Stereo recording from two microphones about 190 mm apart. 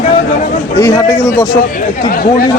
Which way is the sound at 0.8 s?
15° left (ahead or behind).